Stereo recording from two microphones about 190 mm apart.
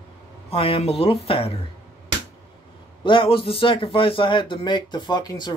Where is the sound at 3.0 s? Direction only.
25° left (ahead or behind).